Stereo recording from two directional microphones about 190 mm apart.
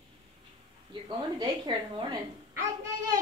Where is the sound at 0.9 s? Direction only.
25° right (ahead or behind).